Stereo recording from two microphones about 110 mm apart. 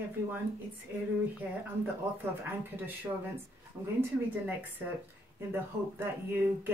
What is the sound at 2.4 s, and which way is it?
Speech, 15° right (ahead or behind).